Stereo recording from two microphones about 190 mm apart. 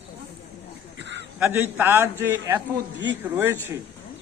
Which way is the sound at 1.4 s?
10° right (ahead or behind).